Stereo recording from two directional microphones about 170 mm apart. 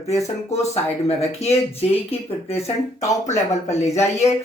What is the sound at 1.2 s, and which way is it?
Speech, 40° left (ahead or behind).